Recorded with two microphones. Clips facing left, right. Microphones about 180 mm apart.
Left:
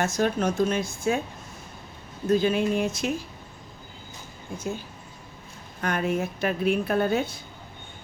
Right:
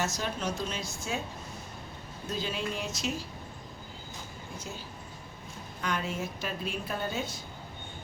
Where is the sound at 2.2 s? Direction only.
55° left (ahead or behind).